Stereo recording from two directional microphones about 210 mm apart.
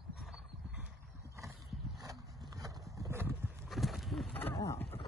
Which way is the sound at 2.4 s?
15° right (ahead or behind).